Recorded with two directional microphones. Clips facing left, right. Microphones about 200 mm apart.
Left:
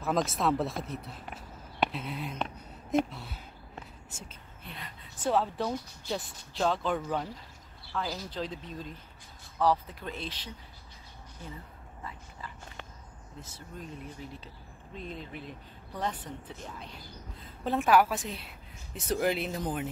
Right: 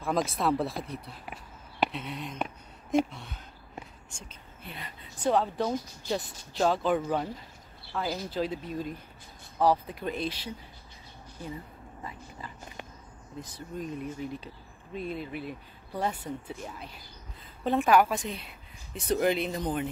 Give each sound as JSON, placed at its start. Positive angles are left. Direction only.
{"t": 0.0, "sound": "speech", "side_deg": 0}
{"t": 12.0, "sound": "a sound", "side_deg": -15}
{"t": 13.4, "sound": "speech", "side_deg": -15}
{"t": 17.6, "sound": "speech", "side_deg": 0}